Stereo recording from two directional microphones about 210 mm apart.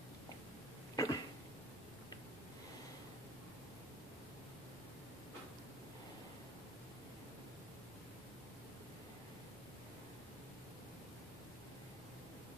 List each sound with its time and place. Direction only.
0.9 s cough: 15° left (ahead or behind)